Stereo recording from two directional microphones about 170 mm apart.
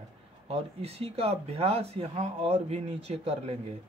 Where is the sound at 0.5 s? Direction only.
35° right (ahead or behind).